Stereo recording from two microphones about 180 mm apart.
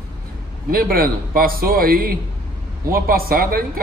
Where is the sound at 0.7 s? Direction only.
55° right (ahead or behind).